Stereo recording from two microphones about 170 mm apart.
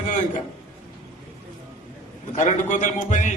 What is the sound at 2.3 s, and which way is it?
A man's voice, 45° left (ahead or behind).